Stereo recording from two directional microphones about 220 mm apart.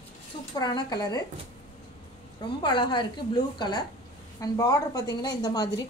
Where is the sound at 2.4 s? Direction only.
20° left (ahead or behind).